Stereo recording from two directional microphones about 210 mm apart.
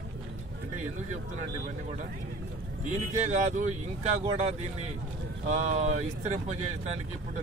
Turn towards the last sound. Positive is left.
turn(degrees=-35)  # may be behind; listen again after turning